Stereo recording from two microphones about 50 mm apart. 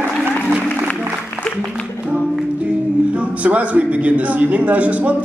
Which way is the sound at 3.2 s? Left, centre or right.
Right.